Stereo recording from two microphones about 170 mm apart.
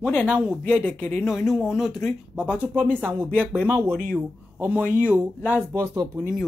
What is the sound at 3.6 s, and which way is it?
A man's voice, 15° right (ahead or behind).